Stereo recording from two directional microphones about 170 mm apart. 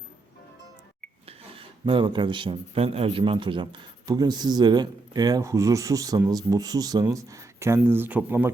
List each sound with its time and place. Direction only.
1.3 s speech: 30° right (ahead or behind); by 8.4 s 10° right (ahead or behind)